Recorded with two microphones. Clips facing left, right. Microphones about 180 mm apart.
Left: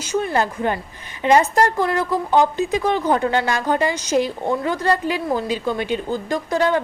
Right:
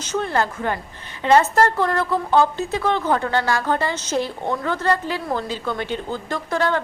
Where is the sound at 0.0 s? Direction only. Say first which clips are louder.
Left 2 dB; 10° left (ahead or behind).